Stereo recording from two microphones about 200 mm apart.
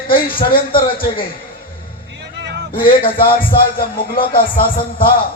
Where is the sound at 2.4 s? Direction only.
55° right (ahead or behind).